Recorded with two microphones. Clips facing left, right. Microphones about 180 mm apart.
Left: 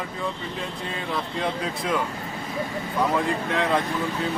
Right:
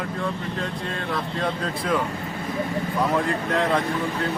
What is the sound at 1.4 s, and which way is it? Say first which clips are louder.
Speech: right 1 dB; 5° left (ahead or behind).